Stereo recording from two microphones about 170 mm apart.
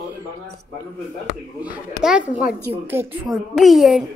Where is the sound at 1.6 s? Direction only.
5° right (ahead or behind).